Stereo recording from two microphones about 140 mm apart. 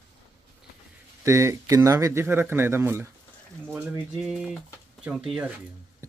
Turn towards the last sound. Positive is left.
turn(degrees=-5)  # may be behind; listen again after turning